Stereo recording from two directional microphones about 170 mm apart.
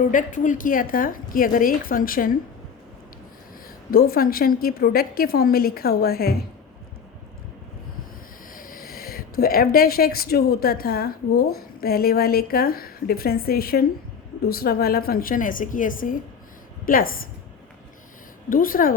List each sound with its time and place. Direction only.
0.1 s a woman's voice: 50° left (ahead or behind)
3.9 s a woman's voice: 60° left (ahead or behind)
8.5 s a woman's voice: 55° left (ahead or behind)
18.4 s a woman's voice: 55° left (ahead or behind)